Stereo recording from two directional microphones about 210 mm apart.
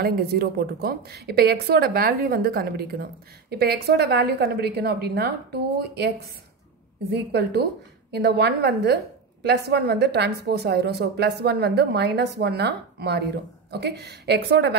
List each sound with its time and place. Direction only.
0.0 s a woman's voice: 50° right (ahead or behind)